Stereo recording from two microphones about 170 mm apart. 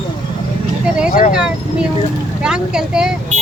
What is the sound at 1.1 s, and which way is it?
Speech, 50° left (ahead or behind).